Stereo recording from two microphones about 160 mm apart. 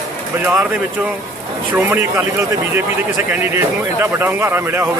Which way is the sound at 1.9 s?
15° right (ahead or behind).